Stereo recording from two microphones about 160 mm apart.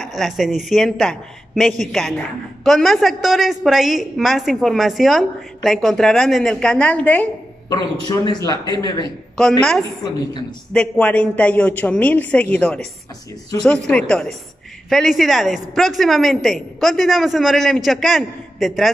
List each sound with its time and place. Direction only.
0.0 s a woman's voice: centre (ahead or behind)
7.7 s a man's voice: 25° left (ahead or behind)
9.4 s a woman's voice: 5° left (ahead or behind)
13.5 s a man's voice: 20° left (ahead or behind)
13.8 s a woman's voice: 5° left (ahead or behind)